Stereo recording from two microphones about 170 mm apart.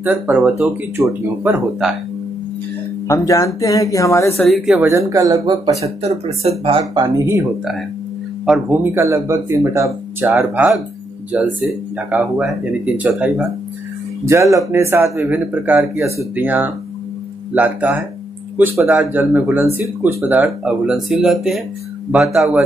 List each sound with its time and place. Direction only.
0.0 s speech: 10° right (ahead or behind)
3.1 s speech: 20° left (ahead or behind)
4.4 s speech: centre (ahead or behind)
4.8 s speech: 20° right (ahead or behind)
5.8 s speech: 35° right (ahead or behind); by 7.4 s 20° right (ahead or behind)
8.5 s speech: 10° right (ahead or behind)